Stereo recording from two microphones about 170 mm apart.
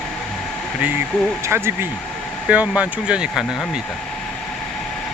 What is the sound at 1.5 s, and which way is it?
Speech, 15° right (ahead or behind).